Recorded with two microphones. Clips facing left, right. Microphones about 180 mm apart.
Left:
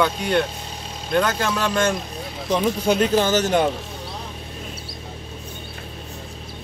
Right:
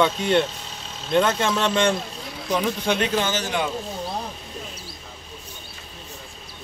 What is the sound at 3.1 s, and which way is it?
Speech, 40° left (ahead or behind).